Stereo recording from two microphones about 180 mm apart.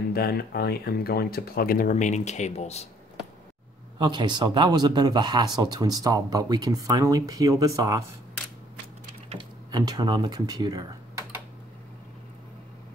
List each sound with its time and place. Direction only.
0.1 s speech: 60° left (ahead or behind); by 2.9 s 35° left (ahead or behind)
4.0 s speech: 25° right (ahead or behind)
9.3 s speech: 25° right (ahead or behind)